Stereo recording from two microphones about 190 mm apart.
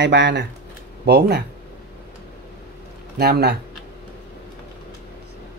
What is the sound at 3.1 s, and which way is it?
Speech, 60° right (ahead or behind).